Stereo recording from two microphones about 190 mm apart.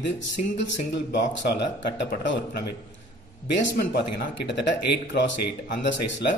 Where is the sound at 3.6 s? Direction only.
65° left (ahead or behind).